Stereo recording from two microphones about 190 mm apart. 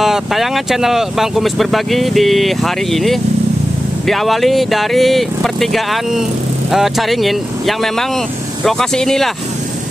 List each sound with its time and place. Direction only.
0.0 s speech: centre (ahead or behind)